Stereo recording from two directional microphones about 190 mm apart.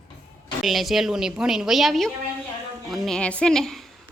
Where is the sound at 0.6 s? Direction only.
Centre (ahead or behind).